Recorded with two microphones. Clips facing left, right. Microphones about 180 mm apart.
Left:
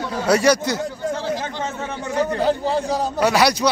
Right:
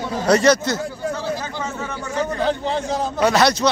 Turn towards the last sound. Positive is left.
turn(degrees=10)  # may be behind; listen again after turning